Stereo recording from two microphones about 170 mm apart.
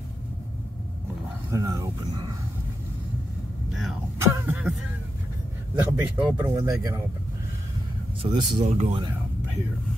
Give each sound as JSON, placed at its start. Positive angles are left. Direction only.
{"t": 1.5, "sound": "speech", "side_deg": -20}
{"t": 4.2, "sound": "a sound", "side_deg": -10}
{"t": 5.8, "sound": "speech", "side_deg": -15}
{"t": 8.2, "sound": "speech", "side_deg": -35}